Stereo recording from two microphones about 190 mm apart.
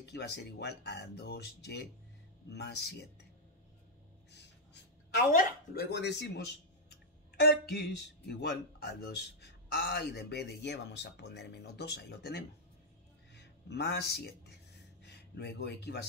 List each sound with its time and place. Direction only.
0.0 s speech: 60° left (ahead or behind)
4.3 s speech: 65° left (ahead or behind)